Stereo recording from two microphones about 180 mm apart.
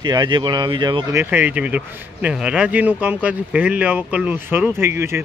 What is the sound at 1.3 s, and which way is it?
A man's voice, 10° right (ahead or behind).